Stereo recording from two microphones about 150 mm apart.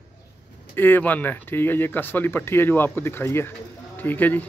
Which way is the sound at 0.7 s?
15° left (ahead or behind).